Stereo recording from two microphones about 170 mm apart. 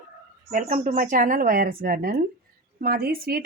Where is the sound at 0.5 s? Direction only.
50° right (ahead or behind).